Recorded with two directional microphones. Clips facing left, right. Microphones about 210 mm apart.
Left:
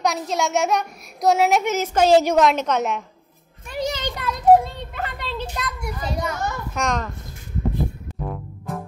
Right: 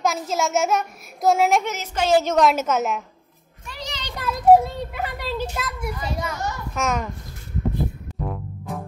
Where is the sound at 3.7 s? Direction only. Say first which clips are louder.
Left 10 dB; 50° left (ahead or behind).